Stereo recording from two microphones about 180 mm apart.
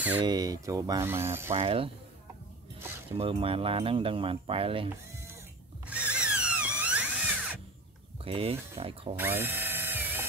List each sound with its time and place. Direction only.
0.2 s speech: 20° right (ahead or behind)
1.5 s speech: 30° right (ahead or behind)
3.1 s speech: 30° right (ahead or behind)
5.1 s mechanisms: 15° right (ahead or behind)
5.9 s drill: 5° right (ahead or behind)
8.2 s speech: 30° right (ahead or behind)
9.4 s drill: 10° right (ahead or behind)